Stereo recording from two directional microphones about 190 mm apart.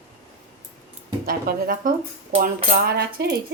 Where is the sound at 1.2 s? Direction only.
50° right (ahead or behind).